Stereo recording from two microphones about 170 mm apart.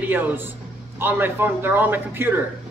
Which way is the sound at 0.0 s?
10° right (ahead or behind).